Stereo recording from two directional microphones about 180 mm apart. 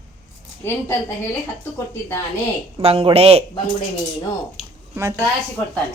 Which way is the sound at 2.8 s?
30° right (ahead or behind).